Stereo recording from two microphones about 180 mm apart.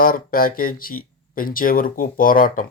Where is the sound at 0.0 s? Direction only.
55° left (ahead or behind).